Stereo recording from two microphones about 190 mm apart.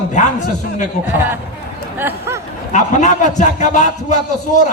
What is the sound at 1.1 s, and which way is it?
Speech, 10° right (ahead or behind).